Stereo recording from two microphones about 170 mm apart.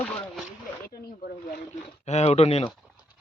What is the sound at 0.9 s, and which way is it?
Snake, 60° left (ahead or behind).